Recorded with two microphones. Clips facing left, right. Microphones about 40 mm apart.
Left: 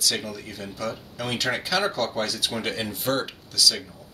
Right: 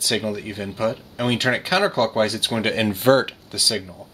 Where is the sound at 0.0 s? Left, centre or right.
Right.